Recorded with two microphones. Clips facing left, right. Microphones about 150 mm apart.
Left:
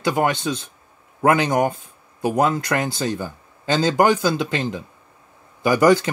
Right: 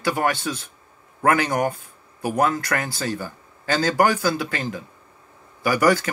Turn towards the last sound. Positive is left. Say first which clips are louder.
# left 4 dB
turn(degrees=20)  # may be behind; listen again after turning